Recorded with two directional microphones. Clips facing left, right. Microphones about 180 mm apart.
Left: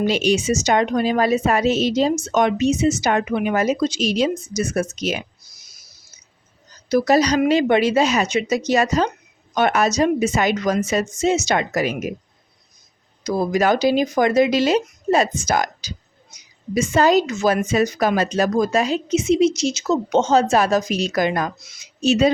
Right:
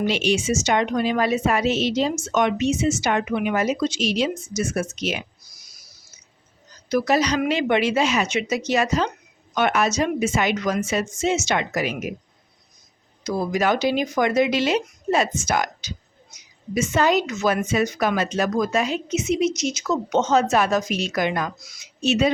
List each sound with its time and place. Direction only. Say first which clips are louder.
0.0 s a woman's voice: left 3 dB; 40° left (ahead or behind)
5.5 s a sound: even; 25° left (ahead or behind)
6.8 s a woman's voice: left 4 dB; 35° left (ahead or behind)
13.2 s a woman's voice: left 3 dB; 40° left (ahead or behind)